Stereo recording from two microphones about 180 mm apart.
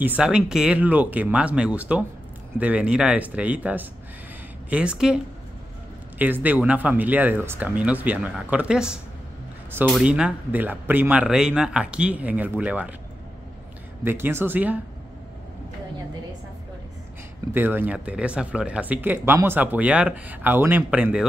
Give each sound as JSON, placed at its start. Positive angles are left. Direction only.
{"t": 0.0, "sound": "speech", "side_deg": -5}
{"t": 14.0, "sound": "speech", "side_deg": -10}
{"t": 17.6, "sound": "speech", "side_deg": -10}